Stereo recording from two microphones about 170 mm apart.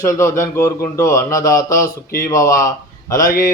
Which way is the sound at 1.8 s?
55° left (ahead or behind).